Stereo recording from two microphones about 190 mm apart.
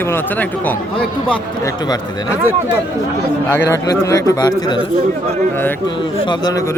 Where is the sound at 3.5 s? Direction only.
15° left (ahead or behind).